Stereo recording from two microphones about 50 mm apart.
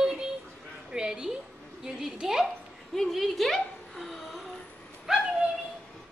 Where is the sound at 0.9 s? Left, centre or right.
Centre.